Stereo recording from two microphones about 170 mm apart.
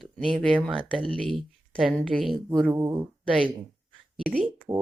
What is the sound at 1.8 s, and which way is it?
Speech, centre (ahead or behind).